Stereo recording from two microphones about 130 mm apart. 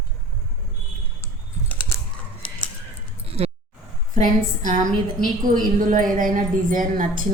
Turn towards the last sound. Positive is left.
turn(degrees=-90)